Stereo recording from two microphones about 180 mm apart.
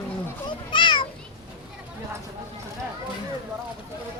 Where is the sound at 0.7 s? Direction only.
25° left (ahead or behind).